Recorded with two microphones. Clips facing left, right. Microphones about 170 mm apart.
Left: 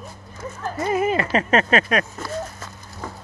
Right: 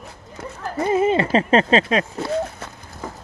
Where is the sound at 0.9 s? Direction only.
30° right (ahead or behind).